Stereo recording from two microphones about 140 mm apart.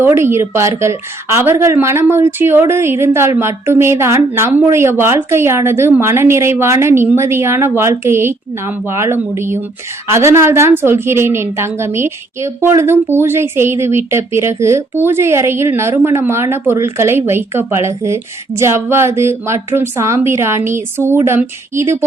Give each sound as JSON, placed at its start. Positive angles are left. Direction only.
{"t": 0.0, "sound": "a woman's voice", "side_deg": -20}